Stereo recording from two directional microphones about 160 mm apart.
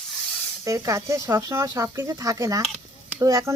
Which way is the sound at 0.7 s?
20° right (ahead or behind).